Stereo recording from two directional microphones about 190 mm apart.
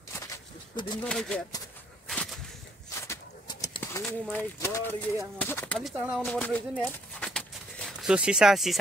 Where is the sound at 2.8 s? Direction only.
15° left (ahead or behind).